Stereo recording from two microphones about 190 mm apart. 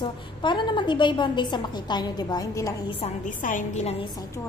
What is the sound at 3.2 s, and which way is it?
Speech, 45° left (ahead or behind).